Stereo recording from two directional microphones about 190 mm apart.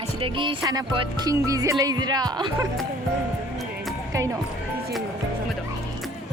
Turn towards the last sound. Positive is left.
turn(degrees=-15)  # may be behind; listen again after turning